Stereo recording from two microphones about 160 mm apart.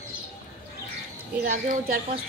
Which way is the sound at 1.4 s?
60° right (ahead or behind).